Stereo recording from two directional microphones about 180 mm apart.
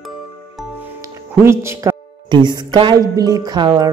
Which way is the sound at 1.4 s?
15° right (ahead or behind).